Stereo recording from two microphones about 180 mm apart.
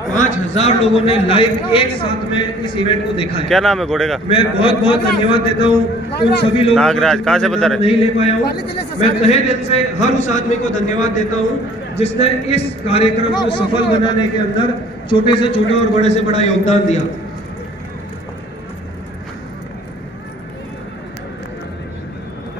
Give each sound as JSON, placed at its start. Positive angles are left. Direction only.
{"t": 0.1, "sound": "a man's voice", "side_deg": 40}
{"t": 3.4, "sound": "a man's voice", "side_deg": 0}
{"t": 4.3, "sound": "a man's voice", "side_deg": 30}
{"t": 6.7, "sound": "a man's voice", "side_deg": 0}
{"t": 7.8, "sound": "a man's voice", "side_deg": 35}